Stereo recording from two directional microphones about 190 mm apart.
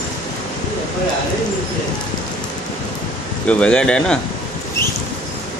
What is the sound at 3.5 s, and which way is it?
Speech, 5° left (ahead or behind).